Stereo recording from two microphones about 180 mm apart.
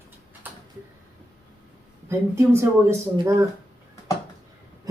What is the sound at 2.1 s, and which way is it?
Speech, 15° right (ahead or behind).